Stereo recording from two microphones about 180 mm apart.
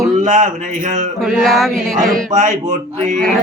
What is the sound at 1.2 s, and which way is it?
Speech, centre (ahead or behind).